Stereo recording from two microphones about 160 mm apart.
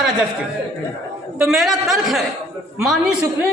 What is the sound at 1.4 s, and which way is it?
A man's voice, centre (ahead or behind).